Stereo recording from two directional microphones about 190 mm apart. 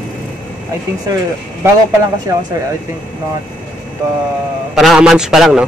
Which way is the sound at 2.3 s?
15° right (ahead or behind).